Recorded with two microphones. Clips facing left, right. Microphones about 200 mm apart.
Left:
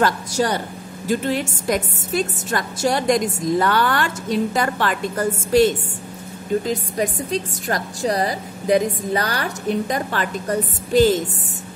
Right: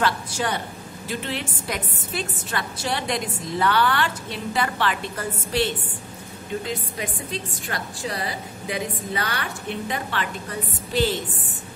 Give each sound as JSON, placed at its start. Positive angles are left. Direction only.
{"t": 0.0, "sound": "a woman's voice", "side_deg": 40}